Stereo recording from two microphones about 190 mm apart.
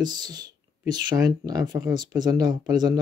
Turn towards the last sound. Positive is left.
turn(degrees=-20)  # may be behind; listen again after turning